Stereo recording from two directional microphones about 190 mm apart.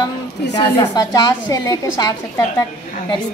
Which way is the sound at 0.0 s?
20° left (ahead or behind).